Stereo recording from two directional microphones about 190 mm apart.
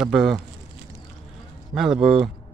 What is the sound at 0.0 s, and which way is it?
Speech, 5° right (ahead or behind).